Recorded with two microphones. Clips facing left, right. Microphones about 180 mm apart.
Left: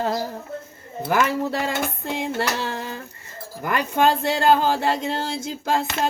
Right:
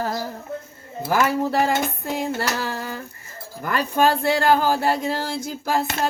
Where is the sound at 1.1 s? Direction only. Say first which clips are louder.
Right 2 dB; 20° left (ahead or behind).